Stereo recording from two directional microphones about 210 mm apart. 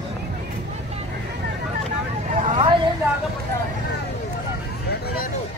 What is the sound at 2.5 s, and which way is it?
Vehicle, 25° right (ahead or behind).